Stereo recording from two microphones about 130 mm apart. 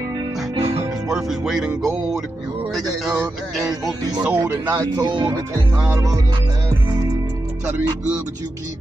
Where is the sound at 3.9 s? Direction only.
30° right (ahead or behind).